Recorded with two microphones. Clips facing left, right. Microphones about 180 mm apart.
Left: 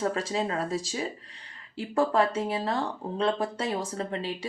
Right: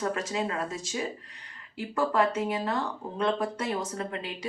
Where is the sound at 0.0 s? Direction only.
30° left (ahead or behind).